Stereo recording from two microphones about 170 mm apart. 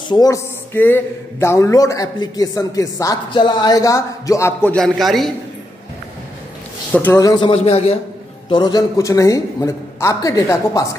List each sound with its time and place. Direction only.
0.1 s a man's voice: 20° left (ahead or behind)
0.7 s a man's voice: 10° left (ahead or behind)
4.7 s a man's voice: centre (ahead or behind)
6.9 s a man's voice: 10° left (ahead or behind)
7.2 s a man's voice: 20° left (ahead or behind)
7.4 s a man's voice: 35° left (ahead or behind)
8.5 s a man's voice: 25° left (ahead or behind)